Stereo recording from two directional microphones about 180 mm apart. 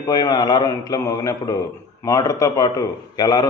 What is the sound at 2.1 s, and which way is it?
A man's voice, 20° left (ahead or behind).